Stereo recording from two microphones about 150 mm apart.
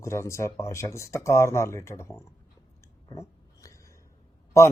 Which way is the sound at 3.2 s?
20° left (ahead or behind).